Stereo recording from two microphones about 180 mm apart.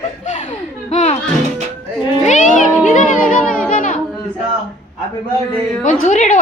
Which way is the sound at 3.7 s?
45° left (ahead or behind).